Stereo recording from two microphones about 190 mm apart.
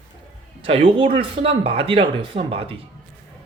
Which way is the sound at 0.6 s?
30° right (ahead or behind).